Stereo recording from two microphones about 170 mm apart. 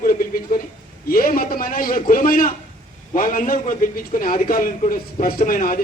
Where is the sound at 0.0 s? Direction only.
55° left (ahead or behind).